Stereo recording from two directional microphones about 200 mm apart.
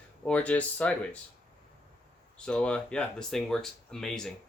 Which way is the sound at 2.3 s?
5° left (ahead or behind).